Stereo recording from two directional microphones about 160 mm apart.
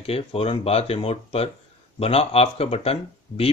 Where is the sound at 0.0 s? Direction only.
40° left (ahead or behind).